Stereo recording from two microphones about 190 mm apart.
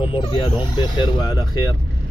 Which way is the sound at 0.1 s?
25° left (ahead or behind).